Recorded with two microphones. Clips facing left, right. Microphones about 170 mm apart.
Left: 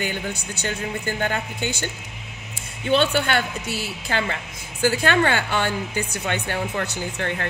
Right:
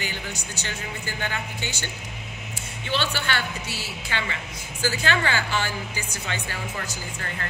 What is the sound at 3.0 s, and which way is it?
Speech, 30° left (ahead or behind).